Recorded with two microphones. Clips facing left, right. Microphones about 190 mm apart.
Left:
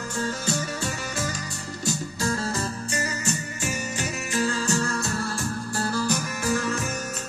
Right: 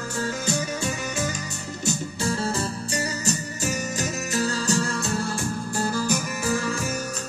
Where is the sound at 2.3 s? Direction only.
30° right (ahead or behind).